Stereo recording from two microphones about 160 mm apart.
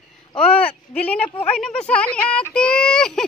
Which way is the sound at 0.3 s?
35° left (ahead or behind).